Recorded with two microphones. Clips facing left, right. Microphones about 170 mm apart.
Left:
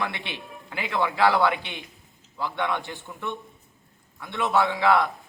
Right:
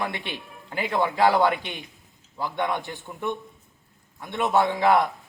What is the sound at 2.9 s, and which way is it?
Speech, 15° right (ahead or behind).